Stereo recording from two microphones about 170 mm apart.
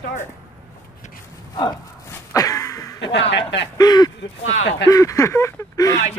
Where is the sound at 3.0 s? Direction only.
90° left.